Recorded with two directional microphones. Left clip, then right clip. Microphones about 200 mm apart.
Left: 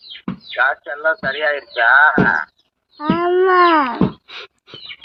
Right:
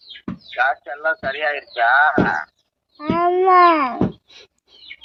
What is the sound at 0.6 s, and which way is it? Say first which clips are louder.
Speech: left 2 dB; 30° right (ahead or behind).